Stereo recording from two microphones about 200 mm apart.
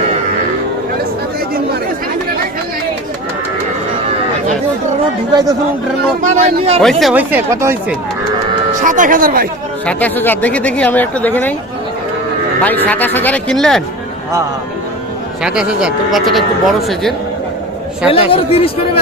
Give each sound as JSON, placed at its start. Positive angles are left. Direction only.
{"t": 6.2, "sound": "speech", "side_deg": -40}
{"t": 6.8, "sound": "speech", "side_deg": -5}
{"t": 8.8, "sound": "speech", "side_deg": -40}
{"t": 9.8, "sound": "speech", "side_deg": 10}
{"t": 12.6, "sound": "speech", "side_deg": 10}
{"t": 15.4, "sound": "speech", "side_deg": -5}
{"t": 18.1, "sound": "speech", "side_deg": 30}